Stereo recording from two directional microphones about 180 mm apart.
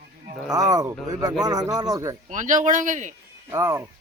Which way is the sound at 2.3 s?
45° right (ahead or behind).